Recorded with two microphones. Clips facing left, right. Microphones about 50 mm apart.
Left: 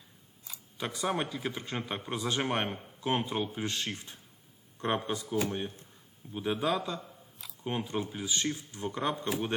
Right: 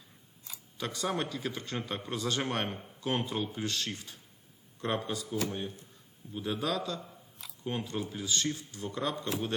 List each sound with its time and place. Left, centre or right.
0.8 s speech: centre
8.8 s speech: left